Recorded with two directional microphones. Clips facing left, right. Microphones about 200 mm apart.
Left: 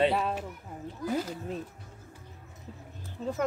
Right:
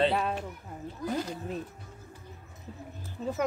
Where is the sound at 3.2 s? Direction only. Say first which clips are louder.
Even; 5° right (ahead or behind).